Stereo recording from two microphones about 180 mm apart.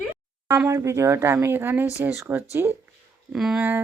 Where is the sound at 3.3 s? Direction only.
5° right (ahead or behind).